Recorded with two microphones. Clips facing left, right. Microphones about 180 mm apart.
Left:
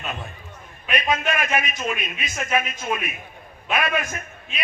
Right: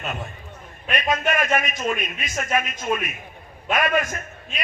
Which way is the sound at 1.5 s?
45° right (ahead or behind).